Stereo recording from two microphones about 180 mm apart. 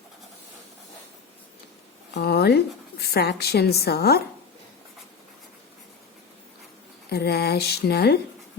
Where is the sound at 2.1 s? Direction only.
60° left (ahead or behind).